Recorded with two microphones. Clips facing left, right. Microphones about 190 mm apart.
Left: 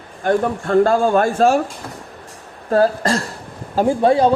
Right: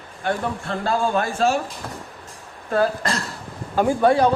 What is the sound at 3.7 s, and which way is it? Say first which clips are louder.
Speech: left 2 dB; 25° left (ahead or behind).